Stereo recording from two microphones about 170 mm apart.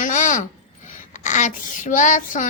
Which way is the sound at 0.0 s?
50° left (ahead or behind).